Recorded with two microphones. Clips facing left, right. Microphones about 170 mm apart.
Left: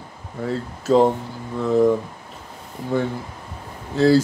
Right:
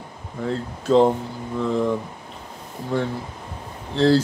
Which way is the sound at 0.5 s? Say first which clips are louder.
Left 1 dB; 5° left (ahead or behind).